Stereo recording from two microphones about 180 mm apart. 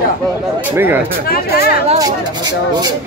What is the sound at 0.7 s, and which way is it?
Speech, 10° right (ahead or behind).